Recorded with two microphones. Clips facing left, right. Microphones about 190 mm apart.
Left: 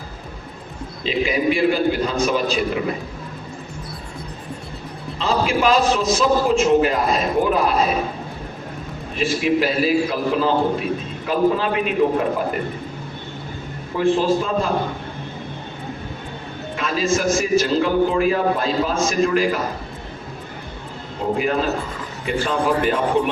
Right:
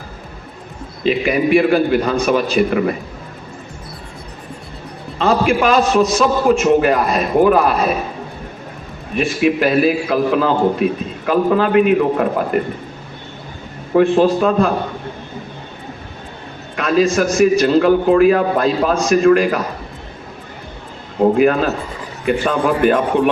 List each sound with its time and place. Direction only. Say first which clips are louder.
1.0 s a man's voice: right 4 dB; 60° right (ahead or behind)
5.1 s a man's voice: right 5 dB; 55° right (ahead or behind)
9.1 s a man's voice: right 3 dB; 60° right (ahead or behind)
13.9 s a man's voice: right 5 dB; 60° right (ahead or behind)
16.7 s a man's voice: right 7 dB; 60° right (ahead or behind)
21.2 s a man's voice: right 8 dB; 60° right (ahead or behind)